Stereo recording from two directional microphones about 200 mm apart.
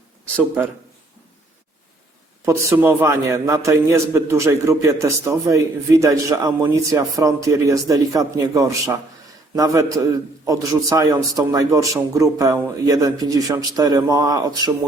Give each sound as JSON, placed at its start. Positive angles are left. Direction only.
{"t": 2.4, "sound": "a man's voice", "side_deg": -15}
{"t": 10.0, "sound": "a man's voice", "side_deg": -15}